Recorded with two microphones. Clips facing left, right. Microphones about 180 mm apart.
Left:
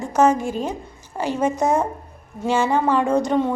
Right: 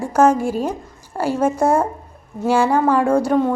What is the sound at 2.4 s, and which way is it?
Speech, 10° right (ahead or behind).